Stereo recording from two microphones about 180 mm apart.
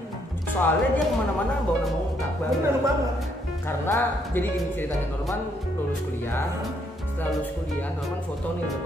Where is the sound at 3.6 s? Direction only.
10° left (ahead or behind).